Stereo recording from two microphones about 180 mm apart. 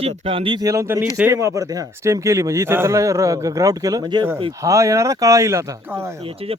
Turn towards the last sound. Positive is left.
turn(degrees=-15)  # may be behind; listen again after turning